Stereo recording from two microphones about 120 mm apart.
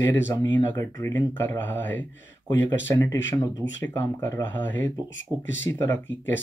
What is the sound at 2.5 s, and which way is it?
Speech, 25° left (ahead or behind).